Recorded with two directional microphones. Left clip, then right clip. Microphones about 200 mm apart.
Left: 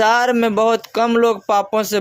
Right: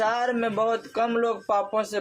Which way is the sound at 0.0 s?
35° left (ahead or behind).